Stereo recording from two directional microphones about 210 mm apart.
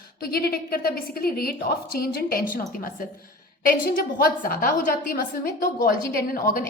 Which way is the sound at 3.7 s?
45° left (ahead or behind).